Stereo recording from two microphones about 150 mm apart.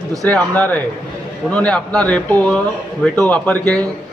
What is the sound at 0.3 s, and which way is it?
A man's voice, 10° left (ahead or behind).